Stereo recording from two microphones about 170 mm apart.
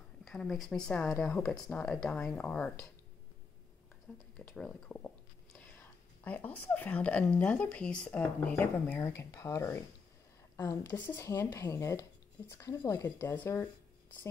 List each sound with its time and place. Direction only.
0.2 s speech: centre (ahead or behind)
4.1 s speech: 5° left (ahead or behind)